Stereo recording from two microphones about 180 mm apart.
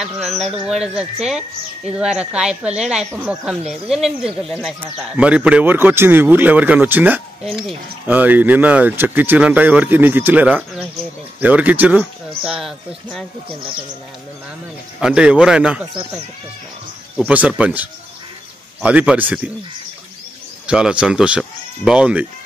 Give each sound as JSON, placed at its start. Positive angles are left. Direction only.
{"t": 0.0, "sound": "speech", "side_deg": 0}
{"t": 15.0, "sound": "speech", "side_deg": -5}
{"t": 17.2, "sound": "speech", "side_deg": -10}
{"t": 20.6, "sound": "speech", "side_deg": -5}